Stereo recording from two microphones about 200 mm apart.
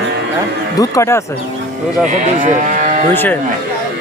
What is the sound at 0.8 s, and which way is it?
Speech, 15° left (ahead or behind).